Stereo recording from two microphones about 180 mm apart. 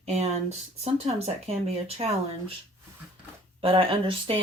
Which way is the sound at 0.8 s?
35° right (ahead or behind).